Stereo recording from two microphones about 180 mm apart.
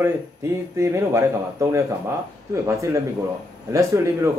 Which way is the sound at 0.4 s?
15° right (ahead or behind).